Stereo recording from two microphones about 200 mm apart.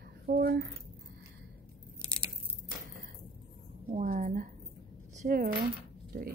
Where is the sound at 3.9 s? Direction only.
40° right (ahead or behind).